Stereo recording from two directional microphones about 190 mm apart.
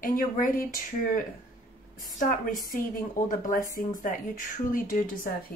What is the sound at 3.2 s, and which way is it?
Speech, 45° left (ahead or behind).